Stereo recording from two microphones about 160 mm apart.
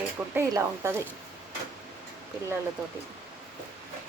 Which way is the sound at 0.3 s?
15° right (ahead or behind).